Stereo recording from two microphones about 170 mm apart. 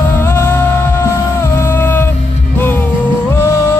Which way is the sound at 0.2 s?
15° left (ahead or behind).